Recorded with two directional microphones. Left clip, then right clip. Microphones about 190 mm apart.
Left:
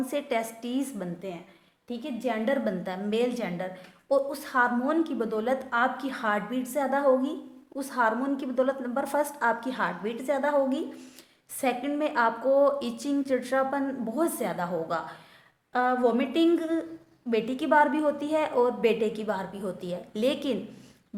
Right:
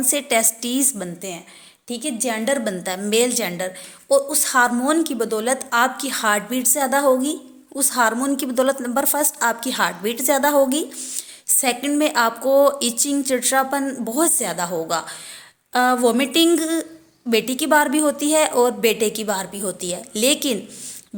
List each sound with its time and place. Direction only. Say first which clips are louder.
0.0 s a woman's voice: right 9 dB; 30° right (ahead or behind)